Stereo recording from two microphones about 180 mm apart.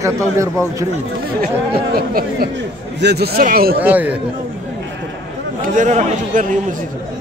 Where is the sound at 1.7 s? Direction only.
55° right (ahead or behind).